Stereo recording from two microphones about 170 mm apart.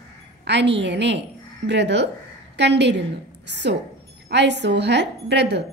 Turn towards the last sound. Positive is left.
turn(degrees=-90)